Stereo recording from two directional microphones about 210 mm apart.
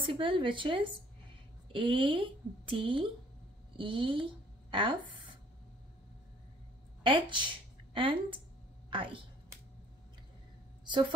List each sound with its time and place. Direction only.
0.1 s speech: 25° right (ahead or behind)
7.0 s a woman's voice: 25° right (ahead or behind)